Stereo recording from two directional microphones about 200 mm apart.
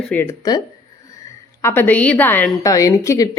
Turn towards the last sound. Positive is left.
turn(degrees=15)  # may be behind; listen again after turning